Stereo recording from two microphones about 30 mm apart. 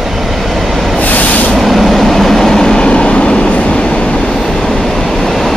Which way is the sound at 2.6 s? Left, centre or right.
Left.